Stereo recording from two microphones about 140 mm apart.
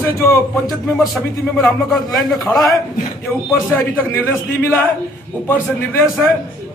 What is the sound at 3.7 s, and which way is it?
A man's voice, 15° left (ahead or behind).